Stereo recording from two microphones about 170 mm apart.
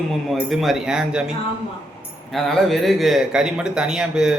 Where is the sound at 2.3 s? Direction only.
Centre (ahead or behind).